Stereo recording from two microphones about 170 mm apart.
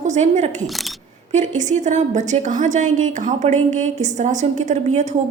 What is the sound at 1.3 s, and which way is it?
A woman's voice, 45° right (ahead or behind).